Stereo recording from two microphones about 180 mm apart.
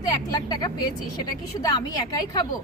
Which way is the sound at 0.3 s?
20° left (ahead or behind).